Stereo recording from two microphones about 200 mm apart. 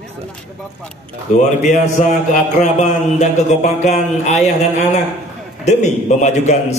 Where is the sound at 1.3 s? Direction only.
40° left (ahead or behind).